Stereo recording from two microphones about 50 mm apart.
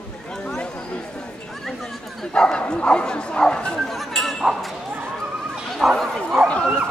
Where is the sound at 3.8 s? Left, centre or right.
Centre.